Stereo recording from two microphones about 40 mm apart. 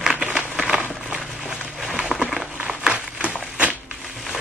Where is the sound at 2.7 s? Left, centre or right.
Right.